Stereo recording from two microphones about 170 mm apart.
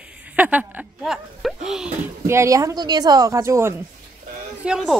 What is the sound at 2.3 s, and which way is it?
A woman's voice, 15° right (ahead or behind).